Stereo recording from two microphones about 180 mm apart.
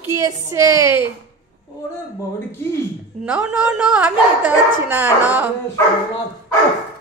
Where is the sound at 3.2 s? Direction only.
5° right (ahead or behind).